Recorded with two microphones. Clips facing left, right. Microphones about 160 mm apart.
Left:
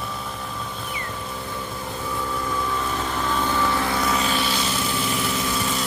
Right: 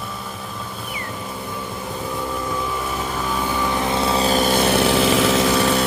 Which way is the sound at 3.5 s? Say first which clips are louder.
Right 3 dB; 15° right (ahead or behind).